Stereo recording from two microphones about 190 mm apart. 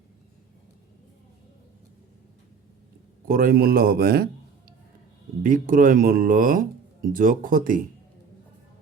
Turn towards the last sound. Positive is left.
turn(degrees=-45)  # may be behind; listen again after turning